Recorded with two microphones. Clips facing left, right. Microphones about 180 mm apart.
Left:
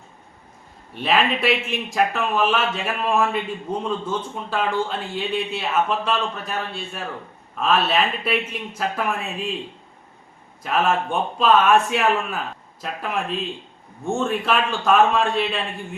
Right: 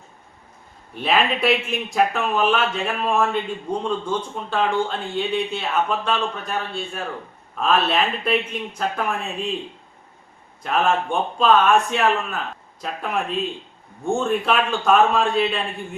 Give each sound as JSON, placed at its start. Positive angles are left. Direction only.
{"t": 0.9, "sound": "a man's voice", "side_deg": 0}
{"t": 10.6, "sound": "a man's voice", "side_deg": 5}